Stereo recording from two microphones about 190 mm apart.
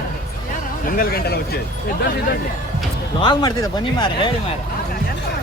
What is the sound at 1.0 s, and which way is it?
Speech, 55° left (ahead or behind).